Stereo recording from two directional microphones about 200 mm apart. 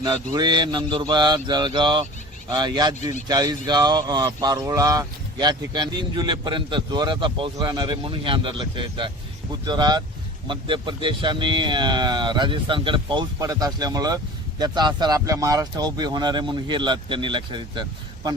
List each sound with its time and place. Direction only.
0.3 s speech: 20° right (ahead or behind)